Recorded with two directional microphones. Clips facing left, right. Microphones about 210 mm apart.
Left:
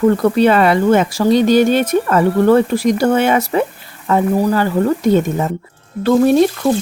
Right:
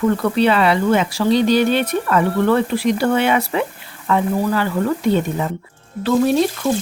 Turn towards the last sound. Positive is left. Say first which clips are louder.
# left 5 dB
turn(degrees=50)  # may be behind; listen again after turning